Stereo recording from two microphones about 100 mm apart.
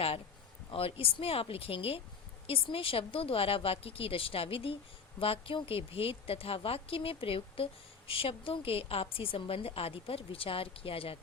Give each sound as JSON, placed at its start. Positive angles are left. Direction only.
{"t": 0.7, "sound": "a woman's voice", "side_deg": 70}